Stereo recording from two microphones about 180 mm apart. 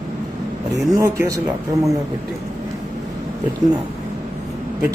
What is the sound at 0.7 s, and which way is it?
Speech, 20° right (ahead or behind).